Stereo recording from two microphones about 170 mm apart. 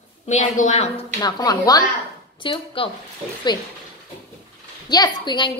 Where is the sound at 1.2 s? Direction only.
25° left (ahead or behind).